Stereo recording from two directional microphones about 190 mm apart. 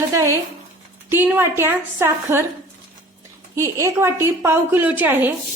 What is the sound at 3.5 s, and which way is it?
A woman's voice, 15° right (ahead or behind).